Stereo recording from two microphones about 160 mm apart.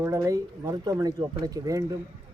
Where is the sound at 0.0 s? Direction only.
20° right (ahead or behind).